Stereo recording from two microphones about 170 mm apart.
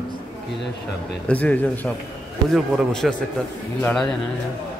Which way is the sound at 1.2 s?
10° left (ahead or behind).